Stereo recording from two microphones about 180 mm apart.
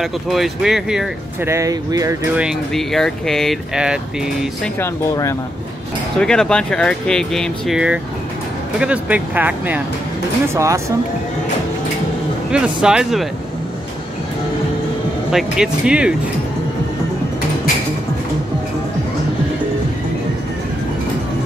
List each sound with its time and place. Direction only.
0.0 s speech: centre (ahead or behind)
1.5 s speech: 20° right (ahead or behind)
2.3 s speech: centre (ahead or behind)
4.7 s speech: 15° left (ahead or behind)
6.1 s speech: 5° left (ahead or behind); by 10.8 s 15° right (ahead or behind)
12.4 s speech: 5° right (ahead or behind)
15.3 s speech: 5° right (ahead or behind)